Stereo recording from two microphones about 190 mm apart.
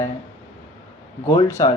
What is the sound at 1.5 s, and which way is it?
Speech, 15° left (ahead or behind).